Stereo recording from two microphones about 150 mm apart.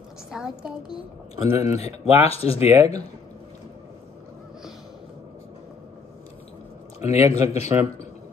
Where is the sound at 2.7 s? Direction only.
20° right (ahead or behind).